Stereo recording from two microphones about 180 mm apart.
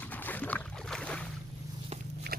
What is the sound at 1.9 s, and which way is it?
Biting, 35° right (ahead or behind).